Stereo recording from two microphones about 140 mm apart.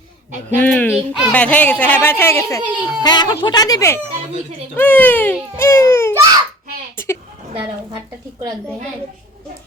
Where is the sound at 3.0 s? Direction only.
30° left (ahead or behind).